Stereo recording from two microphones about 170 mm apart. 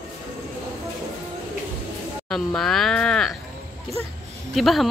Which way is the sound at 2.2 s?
Centre (ahead or behind).